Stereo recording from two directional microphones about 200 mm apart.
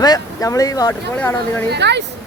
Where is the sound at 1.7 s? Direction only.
60° right (ahead or behind).